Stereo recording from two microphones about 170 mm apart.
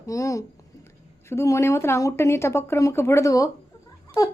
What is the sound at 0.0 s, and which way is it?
A woman's voice, 20° left (ahead or behind).